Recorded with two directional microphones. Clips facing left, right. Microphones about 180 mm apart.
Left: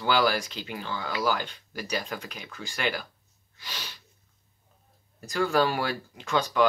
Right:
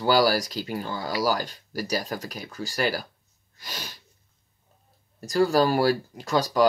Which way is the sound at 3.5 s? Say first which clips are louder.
Right 3 dB; 45° right (ahead or behind).